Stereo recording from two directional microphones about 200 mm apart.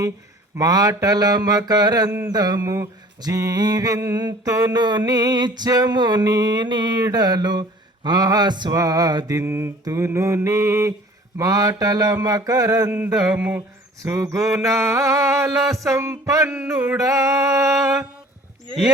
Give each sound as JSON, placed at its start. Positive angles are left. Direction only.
{"t": 0.5, "sound": "mantra", "side_deg": -15}